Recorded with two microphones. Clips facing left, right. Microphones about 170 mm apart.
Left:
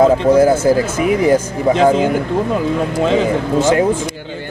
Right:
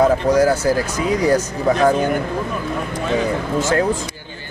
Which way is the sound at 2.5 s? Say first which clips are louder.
Left 7 dB; 90° left.